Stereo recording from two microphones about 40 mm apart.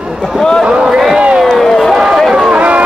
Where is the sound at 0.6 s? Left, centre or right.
Centre.